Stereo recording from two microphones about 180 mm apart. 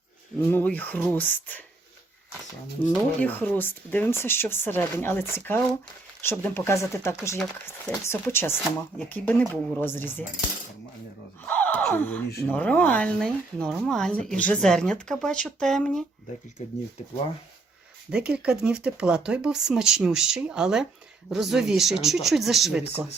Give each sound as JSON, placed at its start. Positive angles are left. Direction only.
{"t": 0.5, "sound": "speech", "side_deg": 10}
{"t": 2.9, "sound": "speech", "side_deg": 10}
{"t": 11.4, "sound": "gasp", "side_deg": 10}
{"t": 12.5, "sound": "speech", "side_deg": 10}
{"t": 18.1, "sound": "speech", "side_deg": -5}